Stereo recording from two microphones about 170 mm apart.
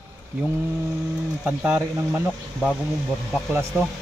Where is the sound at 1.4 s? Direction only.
10° right (ahead or behind).